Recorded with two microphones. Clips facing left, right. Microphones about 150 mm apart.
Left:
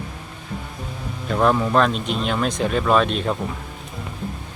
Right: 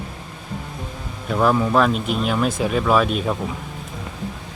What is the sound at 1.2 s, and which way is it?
Speech, centre (ahead or behind).